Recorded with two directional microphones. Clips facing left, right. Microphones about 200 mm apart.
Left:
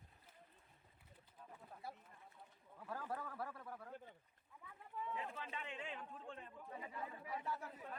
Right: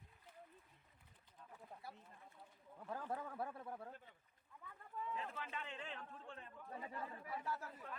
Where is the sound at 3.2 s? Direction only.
20° right (ahead or behind).